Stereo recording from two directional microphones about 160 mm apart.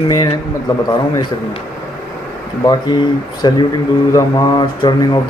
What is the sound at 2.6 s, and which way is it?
Speech, 25° left (ahead or behind).